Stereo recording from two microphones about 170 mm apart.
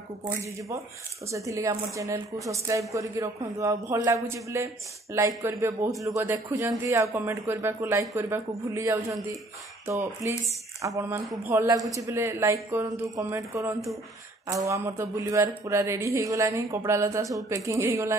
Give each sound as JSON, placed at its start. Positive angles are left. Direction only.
{"t": 0.4, "sound": "a man's voice", "side_deg": -20}